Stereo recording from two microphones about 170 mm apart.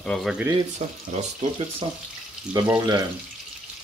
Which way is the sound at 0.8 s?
40° right (ahead or behind).